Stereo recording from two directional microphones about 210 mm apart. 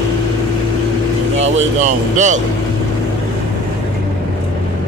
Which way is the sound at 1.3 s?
30° right (ahead or behind).